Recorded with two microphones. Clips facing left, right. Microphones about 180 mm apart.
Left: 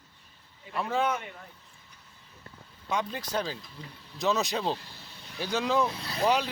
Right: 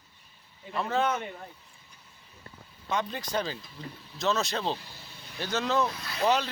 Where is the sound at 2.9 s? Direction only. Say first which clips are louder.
Even; 10° left (ahead or behind).